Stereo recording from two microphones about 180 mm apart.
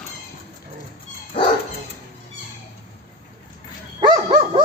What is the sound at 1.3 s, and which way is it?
Dog, 30° left (ahead or behind).